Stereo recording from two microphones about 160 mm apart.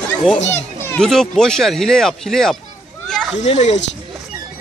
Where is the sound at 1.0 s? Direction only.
Centre (ahead or behind).